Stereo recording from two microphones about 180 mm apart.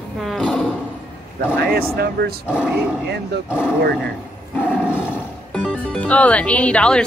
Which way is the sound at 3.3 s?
65° right (ahead or behind).